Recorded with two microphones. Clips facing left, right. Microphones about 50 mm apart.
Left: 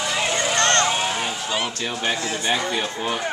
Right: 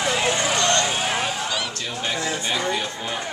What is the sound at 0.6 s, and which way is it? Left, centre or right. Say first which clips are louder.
Vehicle: left 5 dB; left.